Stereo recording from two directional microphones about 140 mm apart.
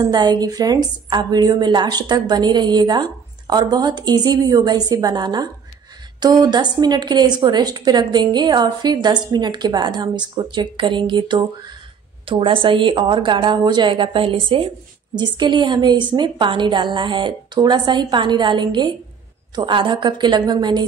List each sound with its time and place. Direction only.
0.0 s a woman's voice: 30° right (ahead or behind)